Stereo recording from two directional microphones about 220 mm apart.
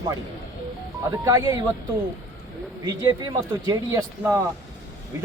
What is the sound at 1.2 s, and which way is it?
Speech, 15° right (ahead or behind).